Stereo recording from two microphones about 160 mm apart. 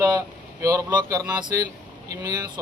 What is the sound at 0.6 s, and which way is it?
Speech, 20° right (ahead or behind).